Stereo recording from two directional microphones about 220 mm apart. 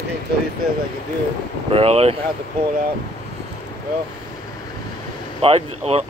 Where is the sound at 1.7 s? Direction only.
25° right (ahead or behind).